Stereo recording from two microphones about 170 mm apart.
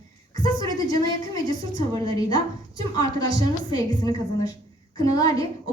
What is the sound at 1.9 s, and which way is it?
A woman's voice, 20° left (ahead or behind).